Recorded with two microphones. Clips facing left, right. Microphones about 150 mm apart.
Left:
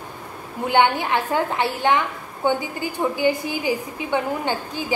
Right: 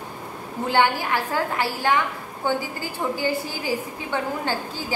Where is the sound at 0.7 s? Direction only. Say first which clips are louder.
Left 3 dB; 20° left (ahead or behind).